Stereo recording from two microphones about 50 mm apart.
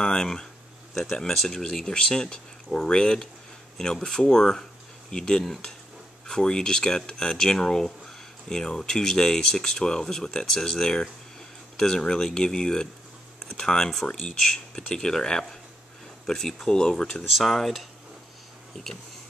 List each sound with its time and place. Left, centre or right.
0.0 s speech: centre
1.3 s speech: centre
11.7 s a sound: centre
12.3 s speech: centre
17.3 s speech: centre